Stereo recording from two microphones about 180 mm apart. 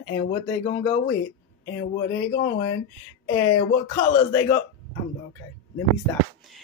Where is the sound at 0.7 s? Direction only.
20° left (ahead or behind).